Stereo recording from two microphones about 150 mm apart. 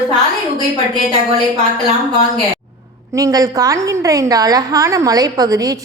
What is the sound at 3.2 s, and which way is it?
A woman's voice, 25° right (ahead or behind).